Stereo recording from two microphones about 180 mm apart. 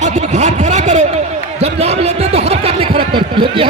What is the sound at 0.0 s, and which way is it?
Vehicle, 40° right (ahead or behind).